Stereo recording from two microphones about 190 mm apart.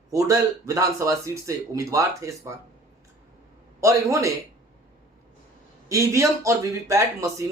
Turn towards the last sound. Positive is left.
turn(degrees=-15)  # may be behind; listen again after turning